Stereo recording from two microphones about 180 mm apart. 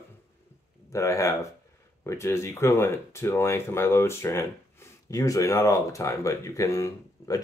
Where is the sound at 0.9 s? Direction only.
15° left (ahead or behind).